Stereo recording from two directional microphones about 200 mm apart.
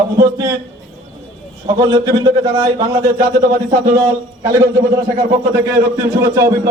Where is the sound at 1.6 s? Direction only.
20° right (ahead or behind).